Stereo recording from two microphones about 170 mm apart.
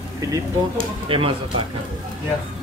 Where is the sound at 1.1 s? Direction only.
30° right (ahead or behind).